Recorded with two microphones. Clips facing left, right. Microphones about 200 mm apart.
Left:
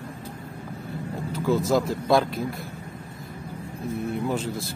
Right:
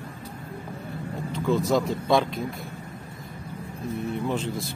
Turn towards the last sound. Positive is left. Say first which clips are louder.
# left 1 dB
turn(degrees=0)  # may be behind; listen again after turning